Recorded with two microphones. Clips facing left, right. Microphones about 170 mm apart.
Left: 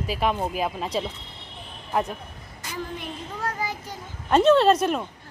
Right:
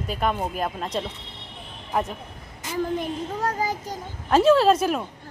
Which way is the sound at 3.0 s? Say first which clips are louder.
Right 6 dB; 40° right (ahead or behind).